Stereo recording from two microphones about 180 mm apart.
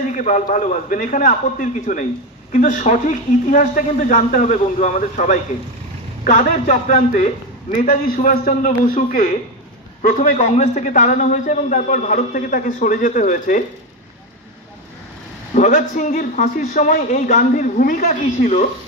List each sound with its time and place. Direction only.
0.0 s a man's voice: 45° left (ahead or behind)
10.3 s a man's voice: 40° left (ahead or behind)
15.5 s a man's voice: 45° left (ahead or behind)